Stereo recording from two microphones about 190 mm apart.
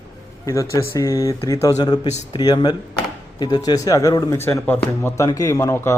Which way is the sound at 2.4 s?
20° left (ahead or behind).